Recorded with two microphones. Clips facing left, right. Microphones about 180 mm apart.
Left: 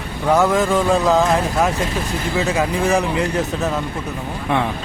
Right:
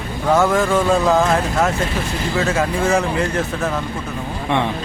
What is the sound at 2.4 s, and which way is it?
Speech, 15° left (ahead or behind).